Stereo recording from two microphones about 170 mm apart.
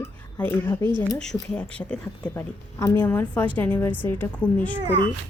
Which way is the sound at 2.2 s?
20° left (ahead or behind).